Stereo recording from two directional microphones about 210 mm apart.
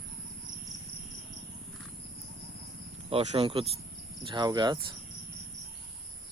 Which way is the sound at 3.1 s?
30° right (ahead or behind).